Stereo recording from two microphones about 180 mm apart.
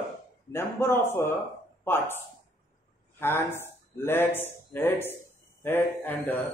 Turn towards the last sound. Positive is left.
turn(degrees=10)  # may be behind; listen again after turning